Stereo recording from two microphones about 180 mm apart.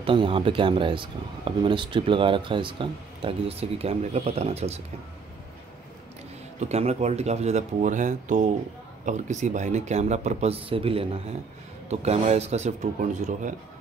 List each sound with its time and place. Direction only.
0.0 s speech: 30° right (ahead or behind)
6.6 s speech: 35° right (ahead or behind)